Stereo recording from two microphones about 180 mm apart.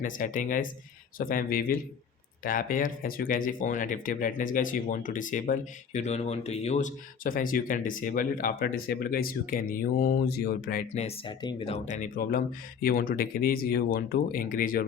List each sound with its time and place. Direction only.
0.0 s speech: 45° left (ahead or behind)
10.9 s speech: 30° left (ahead or behind); by 14.8 s 50° left (ahead or behind)